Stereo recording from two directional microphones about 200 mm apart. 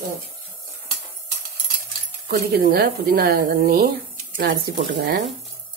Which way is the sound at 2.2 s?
50° right (ahead or behind).